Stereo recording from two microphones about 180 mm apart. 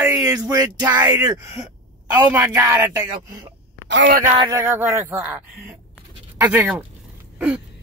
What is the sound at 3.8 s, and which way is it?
Speech, 80° right.